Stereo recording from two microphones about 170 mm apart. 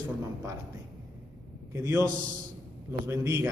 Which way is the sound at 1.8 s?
15° right (ahead or behind).